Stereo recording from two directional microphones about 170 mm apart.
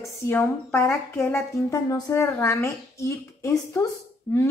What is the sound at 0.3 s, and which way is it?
Speech, 10° left (ahead or behind).